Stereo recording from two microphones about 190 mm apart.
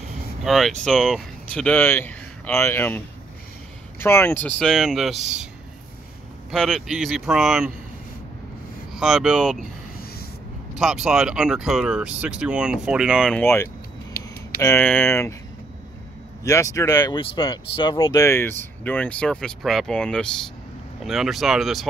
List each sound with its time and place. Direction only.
0.4 s speech: centre (ahead or behind)
4.0 s speech: 10° left (ahead or behind)
6.5 s speech: centre (ahead or behind)
8.9 s speech: centre (ahead or behind)
10.8 s speech: centre (ahead or behind)
13.4 s speech: 10° left (ahead or behind)
16.4 s speech: 15° left (ahead or behind)
18.2 s speech: 10° left (ahead or behind)